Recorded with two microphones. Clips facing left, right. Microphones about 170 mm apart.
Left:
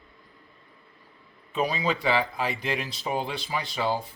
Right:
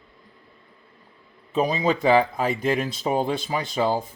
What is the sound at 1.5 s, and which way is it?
Speech, 45° right (ahead or behind).